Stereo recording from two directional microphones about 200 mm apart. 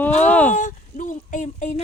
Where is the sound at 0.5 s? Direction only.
40° left (ahead or behind).